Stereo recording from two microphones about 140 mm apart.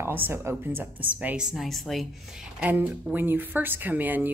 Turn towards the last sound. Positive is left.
turn(degrees=-15)  # may be behind; listen again after turning